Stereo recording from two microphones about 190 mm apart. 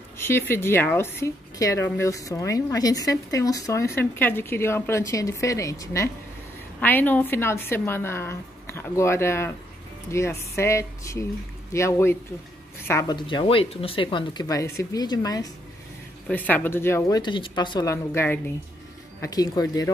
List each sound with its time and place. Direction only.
0.2 s speech: 10° left (ahead or behind)
16.3 s speech: 10° left (ahead or behind)